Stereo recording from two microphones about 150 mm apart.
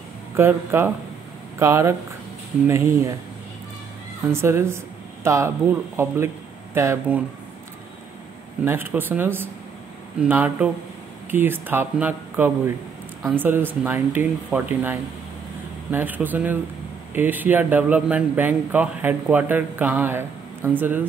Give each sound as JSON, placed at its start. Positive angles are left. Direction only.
{"t": 0.4, "sound": "speech", "side_deg": -15}
{"t": 4.3, "sound": "a woman's voice", "side_deg": -15}
{"t": 8.6, "sound": "speech", "side_deg": -15}